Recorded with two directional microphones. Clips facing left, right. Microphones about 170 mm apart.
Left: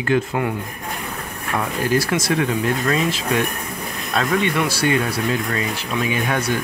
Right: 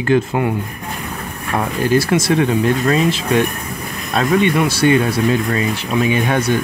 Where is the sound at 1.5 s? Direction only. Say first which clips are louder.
Right 4 dB; 25° right (ahead or behind).